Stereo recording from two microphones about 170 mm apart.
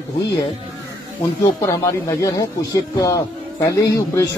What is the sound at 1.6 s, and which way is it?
Speech, 15° left (ahead or behind).